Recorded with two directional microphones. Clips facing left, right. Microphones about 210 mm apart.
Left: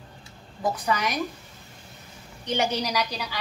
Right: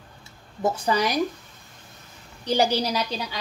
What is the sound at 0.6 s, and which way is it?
Speech, 25° right (ahead or behind).